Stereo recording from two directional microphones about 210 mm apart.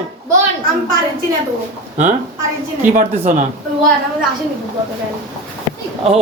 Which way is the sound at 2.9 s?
35° right (ahead or behind).